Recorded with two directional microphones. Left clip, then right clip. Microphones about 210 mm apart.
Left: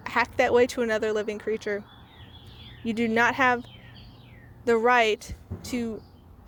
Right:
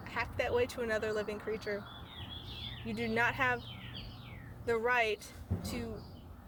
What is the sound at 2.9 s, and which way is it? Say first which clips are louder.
Speech: left 9 dB; 35° left (ahead or behind).